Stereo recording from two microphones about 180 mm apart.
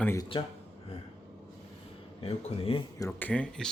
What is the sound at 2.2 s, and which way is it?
Speech, 30° left (ahead or behind).